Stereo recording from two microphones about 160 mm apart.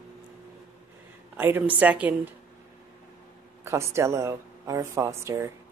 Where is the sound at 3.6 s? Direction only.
15° right (ahead or behind).